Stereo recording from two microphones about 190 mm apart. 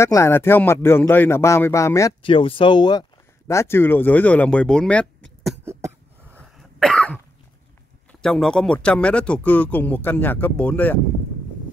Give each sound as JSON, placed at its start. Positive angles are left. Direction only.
{"t": 0.0, "sound": "speech", "side_deg": 15}
{"t": 2.2, "sound": "speech", "side_deg": 30}
{"t": 6.3, "sound": "cough", "side_deg": 5}
{"t": 8.1, "sound": "speech", "side_deg": 5}